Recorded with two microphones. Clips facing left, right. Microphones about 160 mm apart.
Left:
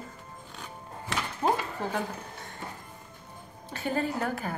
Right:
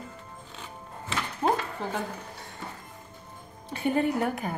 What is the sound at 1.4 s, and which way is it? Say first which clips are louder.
Speech: right 1 dB; centre (ahead or behind).